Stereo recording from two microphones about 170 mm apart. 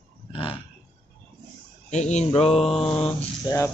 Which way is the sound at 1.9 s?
45° left (ahead or behind).